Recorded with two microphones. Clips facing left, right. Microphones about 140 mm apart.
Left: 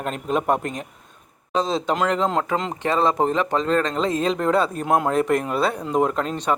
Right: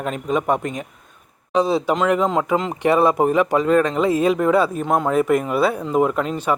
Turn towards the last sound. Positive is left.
turn(degrees=-5)  # may be behind; listen again after turning